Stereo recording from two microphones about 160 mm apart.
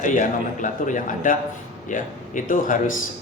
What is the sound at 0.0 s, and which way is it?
A man's voice, 55° left (ahead or behind).